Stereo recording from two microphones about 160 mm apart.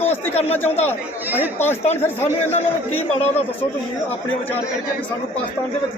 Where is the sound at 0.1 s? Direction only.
40° left (ahead or behind).